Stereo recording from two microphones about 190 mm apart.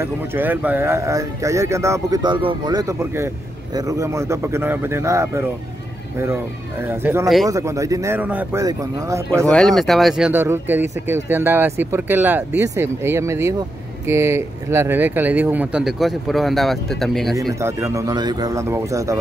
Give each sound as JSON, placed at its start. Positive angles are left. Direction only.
{"t": 0.0, "sound": "speech", "side_deg": -10}
{"t": 6.8, "sound": "speech", "side_deg": -10}
{"t": 9.5, "sound": "speech", "side_deg": 0}
{"t": 17.4, "sound": "speech", "side_deg": -15}